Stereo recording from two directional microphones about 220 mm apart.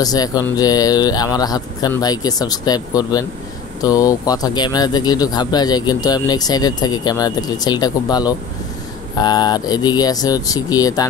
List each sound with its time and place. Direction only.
0.0 s speech: 15° left (ahead or behind)